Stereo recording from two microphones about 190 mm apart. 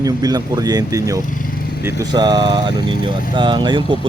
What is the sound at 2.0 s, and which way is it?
A man's voice, 20° right (ahead or behind).